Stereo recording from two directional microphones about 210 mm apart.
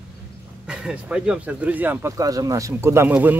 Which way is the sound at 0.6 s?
5° right (ahead or behind).